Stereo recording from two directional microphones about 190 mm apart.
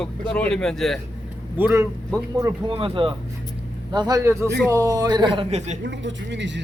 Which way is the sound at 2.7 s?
30° right (ahead or behind).